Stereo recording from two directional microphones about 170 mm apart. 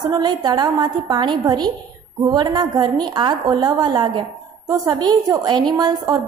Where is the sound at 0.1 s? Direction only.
25° right (ahead or behind).